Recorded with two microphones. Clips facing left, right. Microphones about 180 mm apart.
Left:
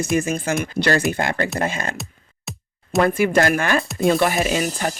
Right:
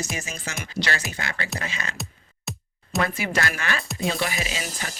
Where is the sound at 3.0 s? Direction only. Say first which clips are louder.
Left 10 dB; 50° left (ahead or behind).